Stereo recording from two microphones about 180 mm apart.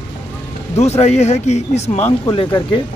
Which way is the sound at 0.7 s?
35° left (ahead or behind).